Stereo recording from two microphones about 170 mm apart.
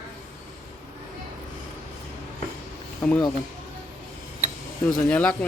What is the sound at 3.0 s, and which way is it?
Speech, 10° left (ahead or behind).